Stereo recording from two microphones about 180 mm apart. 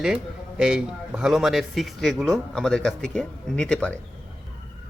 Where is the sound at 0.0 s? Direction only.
5° right (ahead or behind).